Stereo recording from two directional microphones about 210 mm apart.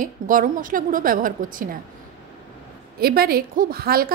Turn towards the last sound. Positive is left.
turn(degrees=-45)  # may be behind; listen again after turning